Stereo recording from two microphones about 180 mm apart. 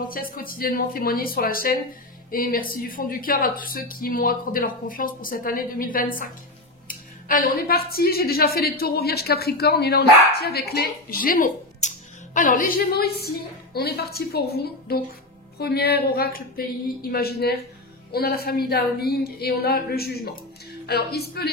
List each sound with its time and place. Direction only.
0.1 s a woman's voice: 55° left (ahead or behind)